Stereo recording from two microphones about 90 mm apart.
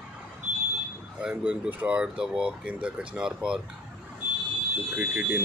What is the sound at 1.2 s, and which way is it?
Speech, 10° right (ahead or behind).